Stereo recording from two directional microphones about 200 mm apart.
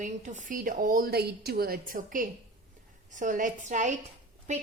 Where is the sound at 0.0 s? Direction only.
40° right (ahead or behind).